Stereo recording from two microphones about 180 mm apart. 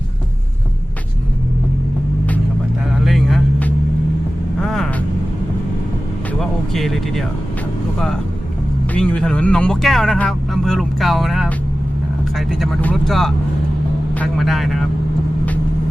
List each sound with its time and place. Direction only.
3.0 s vehicle: centre (ahead or behind)
6.4 s vehicle: centre (ahead or behind)
12.4 s speech: centre (ahead or behind)